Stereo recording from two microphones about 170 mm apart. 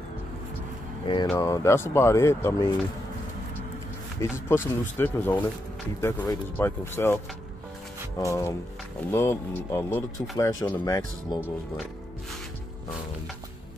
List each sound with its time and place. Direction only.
1.3 s speech: 20° left (ahead or behind)
4.2 s speech: 15° left (ahead or behind)
8.2 s speech: 15° left (ahead or behind)